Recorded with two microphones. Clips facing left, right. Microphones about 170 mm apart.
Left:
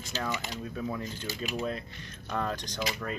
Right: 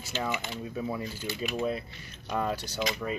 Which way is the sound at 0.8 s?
10° right (ahead or behind).